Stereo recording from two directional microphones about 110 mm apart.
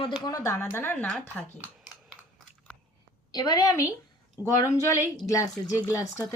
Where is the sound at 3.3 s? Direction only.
40° left (ahead or behind).